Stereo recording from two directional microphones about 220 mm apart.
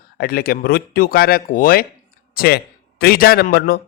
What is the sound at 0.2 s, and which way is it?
A man's voice, 45° left (ahead or behind).